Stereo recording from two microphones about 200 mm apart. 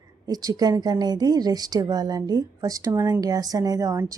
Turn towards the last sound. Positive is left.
turn(degrees=-15)  # may be behind; listen again after turning